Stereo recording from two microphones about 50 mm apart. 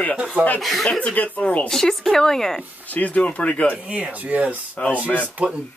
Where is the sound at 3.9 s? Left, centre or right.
Right.